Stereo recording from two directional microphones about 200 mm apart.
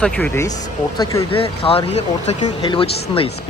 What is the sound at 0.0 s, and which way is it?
Speech, 5° left (ahead or behind).